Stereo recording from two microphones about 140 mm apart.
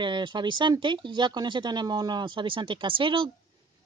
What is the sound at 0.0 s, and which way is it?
Speech, 35° right (ahead or behind).